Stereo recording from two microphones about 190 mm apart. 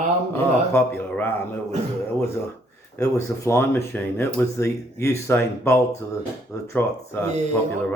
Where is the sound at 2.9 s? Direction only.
15° left (ahead or behind).